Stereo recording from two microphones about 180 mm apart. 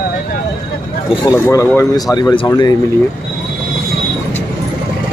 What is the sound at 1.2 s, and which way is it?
Speech, 15° left (ahead or behind).